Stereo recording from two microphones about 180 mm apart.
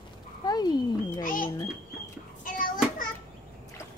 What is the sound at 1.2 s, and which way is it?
Speech, 50° left (ahead or behind).